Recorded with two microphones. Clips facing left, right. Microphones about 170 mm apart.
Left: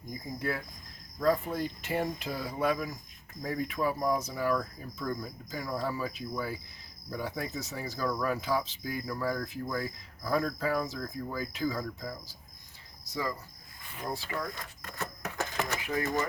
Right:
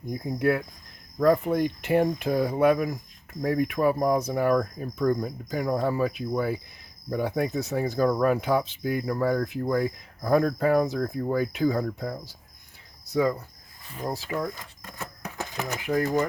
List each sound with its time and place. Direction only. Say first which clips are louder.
0.1 s speech: right 10 dB; 65° right (ahead or behind)
13.9 s speech: right 5 dB; 40° right (ahead or behind)
14.8 s a sound: even; 15° right (ahead or behind)